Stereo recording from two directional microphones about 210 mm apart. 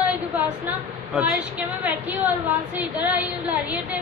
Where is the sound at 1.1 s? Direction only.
5° right (ahead or behind).